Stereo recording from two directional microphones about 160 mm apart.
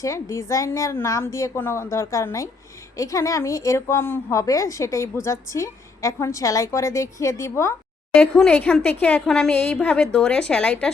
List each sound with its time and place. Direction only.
0.0 s a woman's voice: 20° left (ahead or behind)
8.2 s a woman's voice: 5° left (ahead or behind)